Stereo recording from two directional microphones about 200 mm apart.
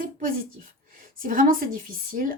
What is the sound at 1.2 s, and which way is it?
A woman's voice, 45° right (ahead or behind).